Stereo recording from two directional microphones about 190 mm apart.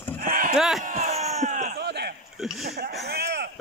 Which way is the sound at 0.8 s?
40° right (ahead or behind).